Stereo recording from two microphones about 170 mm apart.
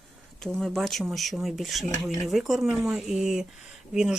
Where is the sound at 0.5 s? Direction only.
Centre (ahead or behind).